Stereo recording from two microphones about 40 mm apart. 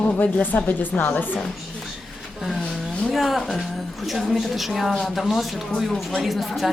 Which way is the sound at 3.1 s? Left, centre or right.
Centre.